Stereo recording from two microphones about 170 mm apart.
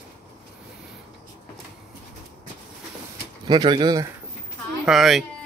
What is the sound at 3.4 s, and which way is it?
Speech, 25° right (ahead or behind).